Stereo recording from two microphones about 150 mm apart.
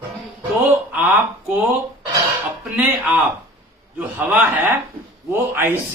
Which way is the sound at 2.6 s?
10° right (ahead or behind).